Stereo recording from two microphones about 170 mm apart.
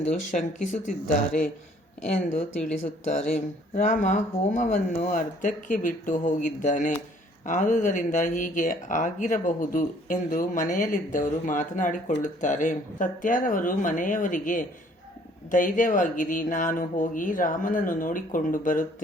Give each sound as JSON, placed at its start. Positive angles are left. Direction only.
{"t": 0.0, "sound": "speech", "side_deg": 45}
{"t": 3.1, "sound": "speech", "side_deg": 45}